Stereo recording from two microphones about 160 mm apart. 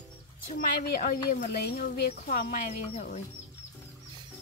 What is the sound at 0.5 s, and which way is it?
Speech, 60° left (ahead or behind).